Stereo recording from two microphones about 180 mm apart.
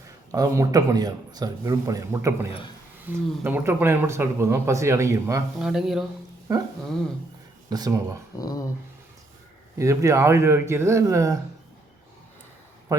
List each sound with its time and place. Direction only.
0.3 s a man's voice: 20° right (ahead or behind)
5.5 s speech: 5° right (ahead or behind)
6.5 s speech: 15° right (ahead or behind)
7.7 s a man's voice: 20° right (ahead or behind)
8.4 s speech: 20° left (ahead or behind)
9.7 s speech: 15° right (ahead or behind)
12.9 s a man's voice: 20° right (ahead or behind)